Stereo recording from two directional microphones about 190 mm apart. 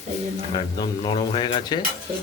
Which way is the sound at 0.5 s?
25° left (ahead or behind).